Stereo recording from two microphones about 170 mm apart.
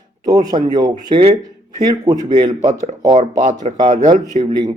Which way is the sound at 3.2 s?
45° right (ahead or behind).